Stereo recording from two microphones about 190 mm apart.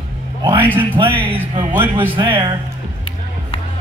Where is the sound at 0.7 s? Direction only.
25° right (ahead or behind).